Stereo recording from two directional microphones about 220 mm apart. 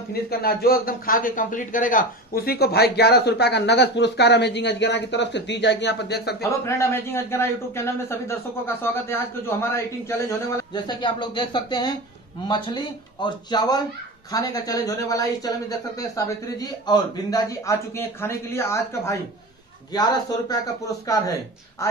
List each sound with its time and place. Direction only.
0.1 s a man's voice: 45° left (ahead or behind)
6.4 s a man's voice: 10° left (ahead or behind)